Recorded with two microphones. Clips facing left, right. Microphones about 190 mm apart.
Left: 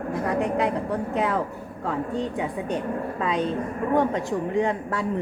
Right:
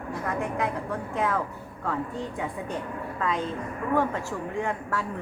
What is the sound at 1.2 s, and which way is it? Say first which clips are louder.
Speech: left 3 dB; 25° left (ahead or behind).